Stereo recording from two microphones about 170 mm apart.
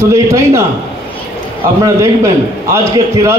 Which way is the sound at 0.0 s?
15° right (ahead or behind).